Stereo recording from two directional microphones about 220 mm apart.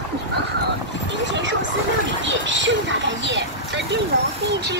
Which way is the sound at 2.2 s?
55° right (ahead or behind).